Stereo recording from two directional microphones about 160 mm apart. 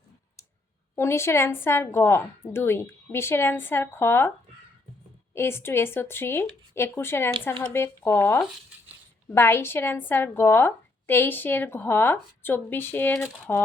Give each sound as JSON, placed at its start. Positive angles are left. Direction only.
{"t": 0.9, "sound": "a woman's voice", "side_deg": 15}
{"t": 5.3, "sound": "a woman's voice", "side_deg": 15}